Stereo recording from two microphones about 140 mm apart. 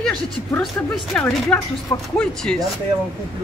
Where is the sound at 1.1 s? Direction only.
10° left (ahead or behind).